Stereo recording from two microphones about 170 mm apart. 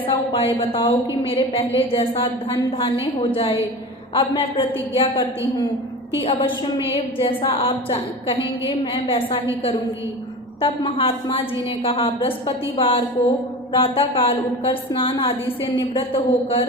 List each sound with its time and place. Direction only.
0.1 s a woman's voice: 30° left (ahead or behind)
6.2 s a woman's voice: 30° left (ahead or behind)
10.6 s a woman's voice: 30° left (ahead or behind)